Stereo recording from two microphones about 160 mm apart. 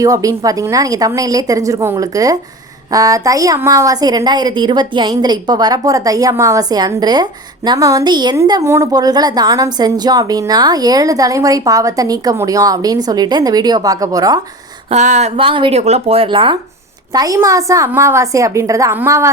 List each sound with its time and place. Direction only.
0.0 s a woman's voice: 20° right (ahead or behind)
14.8 s speech: 45° right (ahead or behind)
15.4 s a woman's voice: 35° right (ahead or behind)